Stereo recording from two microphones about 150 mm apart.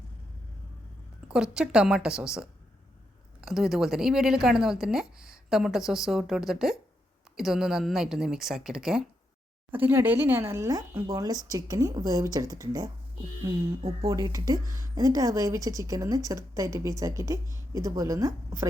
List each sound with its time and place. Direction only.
1.3 s a woman's voice: 5° right (ahead or behind); by 12.9 s 25° right (ahead or behind)
14.1 s a woman's voice: 25° right (ahead or behind)